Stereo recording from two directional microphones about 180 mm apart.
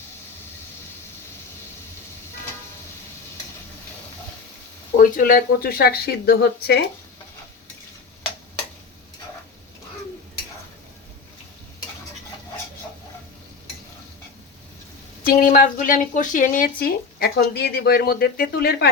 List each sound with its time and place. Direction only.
4.9 s speech: 50° left (ahead or behind)
15.2 s speech: 50° left (ahead or behind)